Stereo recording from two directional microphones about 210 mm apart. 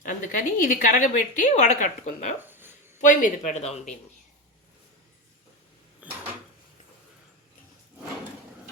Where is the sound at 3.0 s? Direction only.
35° left (ahead or behind).